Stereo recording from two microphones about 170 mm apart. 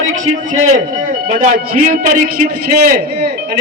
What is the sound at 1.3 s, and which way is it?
A man's voice, 55° right (ahead or behind).